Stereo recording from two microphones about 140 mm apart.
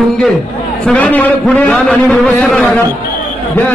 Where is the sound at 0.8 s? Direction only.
10° left (ahead or behind).